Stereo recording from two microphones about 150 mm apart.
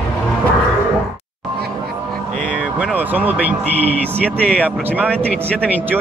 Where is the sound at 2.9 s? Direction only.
10° right (ahead or behind).